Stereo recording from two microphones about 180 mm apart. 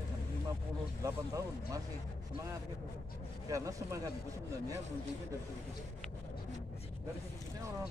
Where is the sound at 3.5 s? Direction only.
20° right (ahead or behind).